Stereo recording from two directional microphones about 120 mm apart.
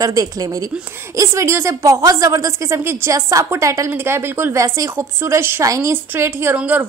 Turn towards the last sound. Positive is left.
turn(degrees=-15)  # may be behind; listen again after turning